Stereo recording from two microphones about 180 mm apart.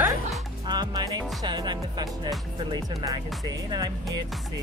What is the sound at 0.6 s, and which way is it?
Speech, 25° right (ahead or behind).